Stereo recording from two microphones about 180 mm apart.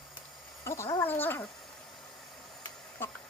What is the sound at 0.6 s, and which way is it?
Cat, 15° left (ahead or behind).